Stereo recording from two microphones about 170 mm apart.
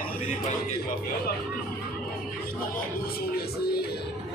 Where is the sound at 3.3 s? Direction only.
65° left (ahead or behind).